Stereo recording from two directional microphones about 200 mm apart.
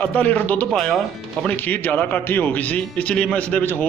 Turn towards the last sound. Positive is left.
turn(degrees=10)  # may be behind; listen again after turning